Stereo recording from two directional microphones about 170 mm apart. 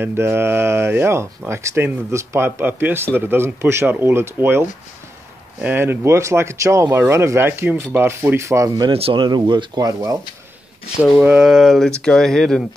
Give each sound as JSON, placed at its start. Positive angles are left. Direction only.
{"t": 0.0, "sound": "speech", "side_deg": -10}
{"t": 8.9, "sound": "speech", "side_deg": -30}
{"t": 11.1, "sound": "speech", "side_deg": -5}